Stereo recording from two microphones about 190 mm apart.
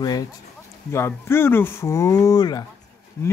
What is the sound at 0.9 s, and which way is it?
Speech, 15° left (ahead or behind).